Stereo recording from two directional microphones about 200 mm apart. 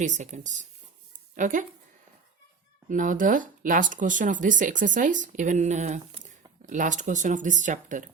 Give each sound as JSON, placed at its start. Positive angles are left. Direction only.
{"t": 0.0, "sound": "speech", "side_deg": -40}
{"t": 2.9, "sound": "speech", "side_deg": -40}